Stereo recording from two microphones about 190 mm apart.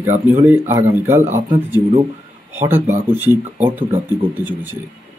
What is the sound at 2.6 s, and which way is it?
Speech, 10° right (ahead or behind).